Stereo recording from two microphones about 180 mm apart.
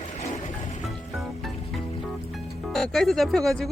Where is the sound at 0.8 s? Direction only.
Centre (ahead or behind).